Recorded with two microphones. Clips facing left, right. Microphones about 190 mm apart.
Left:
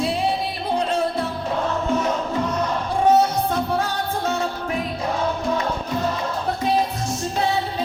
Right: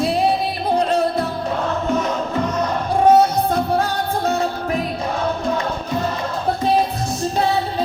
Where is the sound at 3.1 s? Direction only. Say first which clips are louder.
Right 3 dB; 35° right (ahead or behind).